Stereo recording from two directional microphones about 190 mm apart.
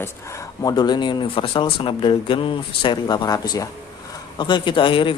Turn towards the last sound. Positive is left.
turn(degrees=25)  # may be behind; listen again after turning